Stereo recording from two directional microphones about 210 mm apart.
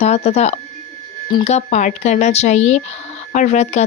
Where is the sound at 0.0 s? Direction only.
30° left (ahead or behind).